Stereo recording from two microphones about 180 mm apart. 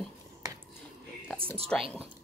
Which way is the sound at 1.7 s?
5° left (ahead or behind).